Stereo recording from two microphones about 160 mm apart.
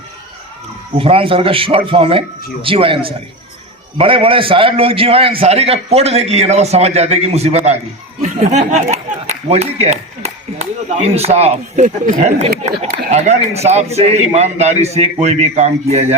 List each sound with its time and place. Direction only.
0.9 s a man's voice: 35° right (ahead or behind)